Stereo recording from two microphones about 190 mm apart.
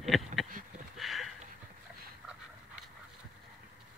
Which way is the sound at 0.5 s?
45° right (ahead or behind).